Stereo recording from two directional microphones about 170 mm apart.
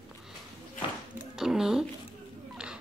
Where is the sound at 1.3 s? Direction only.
5° right (ahead or behind).